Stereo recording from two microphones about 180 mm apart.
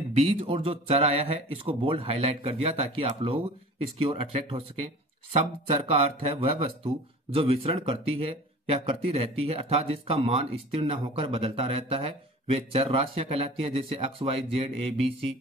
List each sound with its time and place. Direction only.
0.1 s speech: 35° right (ahead or behind)